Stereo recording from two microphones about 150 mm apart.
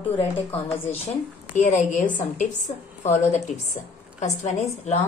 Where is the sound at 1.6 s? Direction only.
55° left (ahead or behind).